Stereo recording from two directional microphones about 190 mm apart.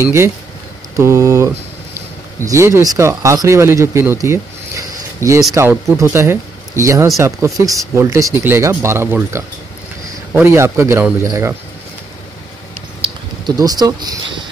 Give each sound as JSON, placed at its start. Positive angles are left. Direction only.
{"t": 0.0, "sound": "speech", "side_deg": -15}
{"t": 13.6, "sound": "speech", "side_deg": -20}